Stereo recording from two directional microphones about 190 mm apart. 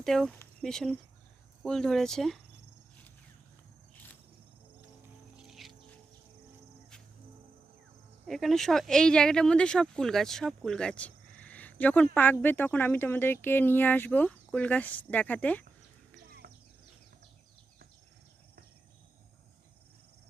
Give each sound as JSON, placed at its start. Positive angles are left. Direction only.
{"t": 0.0, "sound": "speech", "side_deg": 5}
{"t": 3.9, "sound": "cricket", "side_deg": 10}
{"t": 5.5, "sound": "a sound", "side_deg": 0}
{"t": 8.3, "sound": "speech", "side_deg": 0}
{"t": 16.4, "sound": "bird", "side_deg": -40}